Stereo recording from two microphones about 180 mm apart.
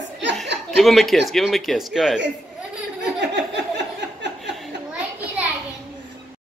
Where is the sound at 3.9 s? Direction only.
75° right (ahead or behind).